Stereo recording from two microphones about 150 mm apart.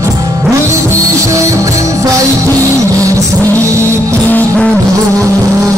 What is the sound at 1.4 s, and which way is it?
Music, 20° right (ahead or behind).